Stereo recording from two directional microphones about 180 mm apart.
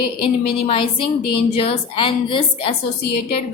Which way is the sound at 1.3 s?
30° left (ahead or behind).